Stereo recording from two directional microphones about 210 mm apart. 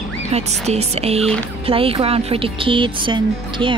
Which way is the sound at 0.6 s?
30° right (ahead or behind).